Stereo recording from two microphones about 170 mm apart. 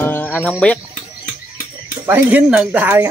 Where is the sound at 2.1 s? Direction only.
10° right (ahead or behind).